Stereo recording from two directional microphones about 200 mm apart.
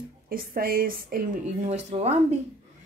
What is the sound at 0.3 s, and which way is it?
A woman's voice, 45° right (ahead or behind).